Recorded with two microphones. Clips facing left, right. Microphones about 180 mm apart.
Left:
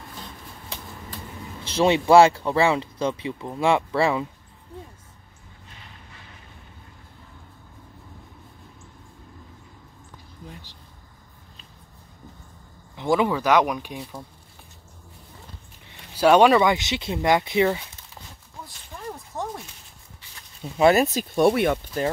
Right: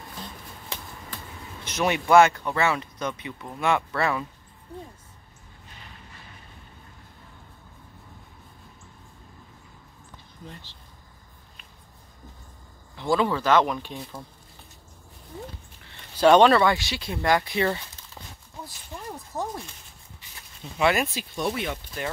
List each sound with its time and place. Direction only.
1.6 s speech: 30° left (ahead or behind)
12.9 s speech: 20° left (ahead or behind)
15.8 s speech: 10° left (ahead or behind)
19.3 s speech: 5° right (ahead or behind)
20.7 s speech: 35° left (ahead or behind)
21.4 s speech: 55° left (ahead or behind)
22.0 s speech: 40° left (ahead or behind)